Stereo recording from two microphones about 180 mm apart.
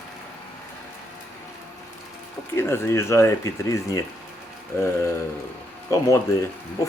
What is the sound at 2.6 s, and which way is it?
Speech, 15° left (ahead or behind).